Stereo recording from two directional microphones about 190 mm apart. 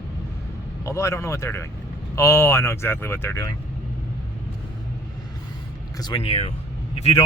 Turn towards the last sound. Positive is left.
turn(degrees=35)  # may be behind; listen again after turning